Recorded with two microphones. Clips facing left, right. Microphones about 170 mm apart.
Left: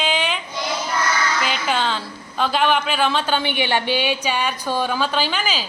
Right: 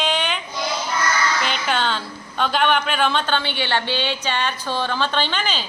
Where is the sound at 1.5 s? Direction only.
Centre (ahead or behind).